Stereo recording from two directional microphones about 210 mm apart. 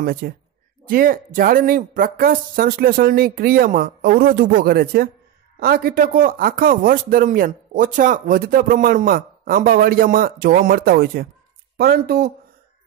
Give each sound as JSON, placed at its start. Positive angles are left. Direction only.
{"t": 0.0, "sound": "speech", "side_deg": -45}